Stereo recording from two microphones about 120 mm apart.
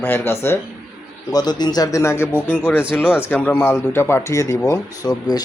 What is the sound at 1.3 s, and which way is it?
Speech, 35° left (ahead or behind).